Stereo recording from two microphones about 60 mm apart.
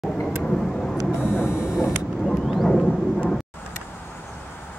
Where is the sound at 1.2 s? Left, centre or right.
Left.